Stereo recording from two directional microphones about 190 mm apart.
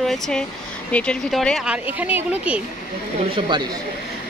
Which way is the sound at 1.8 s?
10° right (ahead or behind).